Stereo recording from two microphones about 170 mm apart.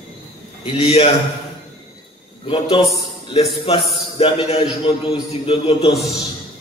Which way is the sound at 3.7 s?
35° left (ahead or behind).